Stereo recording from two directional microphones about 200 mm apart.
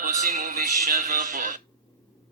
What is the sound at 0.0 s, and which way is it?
Music, 45° right (ahead or behind).